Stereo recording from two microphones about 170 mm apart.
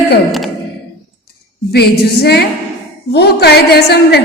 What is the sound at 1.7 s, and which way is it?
A woman's voice, 75° left (ahead or behind).